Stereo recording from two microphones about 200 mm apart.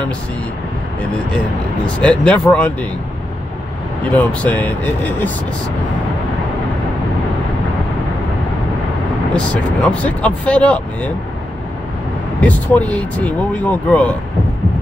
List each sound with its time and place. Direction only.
2.0 s speech: 5° left (ahead or behind)
4.1 s speech: 5° left (ahead or behind)
9.3 s speech: 5° left (ahead or behind)
12.4 s speech: 5° left (ahead or behind)